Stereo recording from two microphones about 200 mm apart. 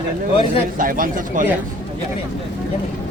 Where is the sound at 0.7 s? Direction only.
45° right (ahead or behind).